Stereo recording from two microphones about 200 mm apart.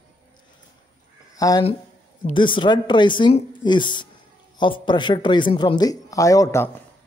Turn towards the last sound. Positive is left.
turn(degrees=15)  # may be behind; listen again after turning